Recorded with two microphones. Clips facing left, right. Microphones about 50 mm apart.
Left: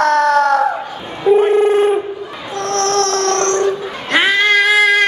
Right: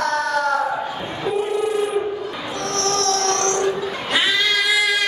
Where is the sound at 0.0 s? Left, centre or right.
Left.